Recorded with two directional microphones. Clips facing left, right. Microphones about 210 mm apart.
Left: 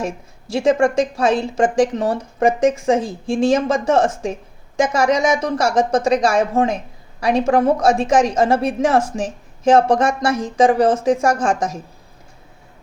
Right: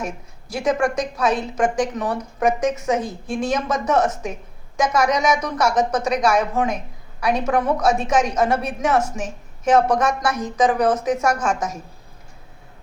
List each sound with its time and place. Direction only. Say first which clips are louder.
0.0 s a woman's voice: left 4 dB; 25° left (ahead or behind)